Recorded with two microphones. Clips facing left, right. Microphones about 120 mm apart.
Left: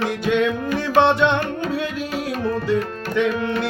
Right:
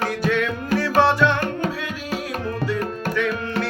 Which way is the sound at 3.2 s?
20° left (ahead or behind).